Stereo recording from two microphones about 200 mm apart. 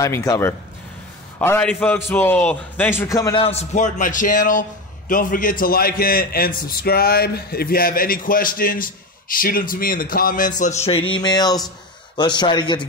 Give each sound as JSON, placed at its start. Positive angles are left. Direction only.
{"t": 0.0, "sound": "a man's voice", "side_deg": 15}
{"t": 3.4, "sound": "a man's voice", "side_deg": 35}